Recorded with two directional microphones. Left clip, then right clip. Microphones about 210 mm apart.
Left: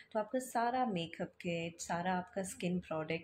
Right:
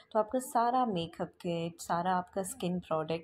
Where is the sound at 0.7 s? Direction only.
25° right (ahead or behind).